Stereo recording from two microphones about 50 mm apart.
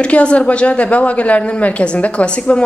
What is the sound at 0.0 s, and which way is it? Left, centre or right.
A woman's voice, left.